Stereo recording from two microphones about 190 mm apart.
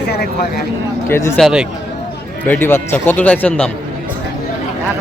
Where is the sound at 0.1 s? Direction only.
55° left (ahead or behind).